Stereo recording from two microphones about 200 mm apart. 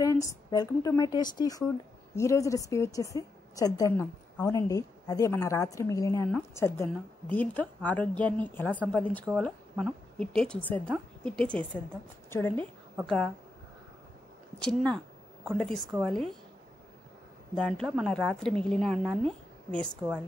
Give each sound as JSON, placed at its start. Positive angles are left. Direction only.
{"t": 0.0, "sound": "a woman's voice", "side_deg": 15}
{"t": 9.3, "sound": "a woman's voice", "side_deg": -5}
{"t": 14.6, "sound": "a woman's voice", "side_deg": 5}
{"t": 17.6, "sound": "a woman's voice", "side_deg": 5}